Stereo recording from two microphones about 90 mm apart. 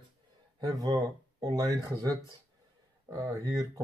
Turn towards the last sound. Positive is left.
turn(degrees=-40)  # may be behind; listen again after turning